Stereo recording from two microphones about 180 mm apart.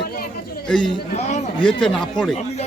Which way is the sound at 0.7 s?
5° left (ahead or behind).